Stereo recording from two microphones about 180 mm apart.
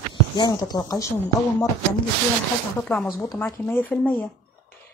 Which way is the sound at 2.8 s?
10° left (ahead or behind).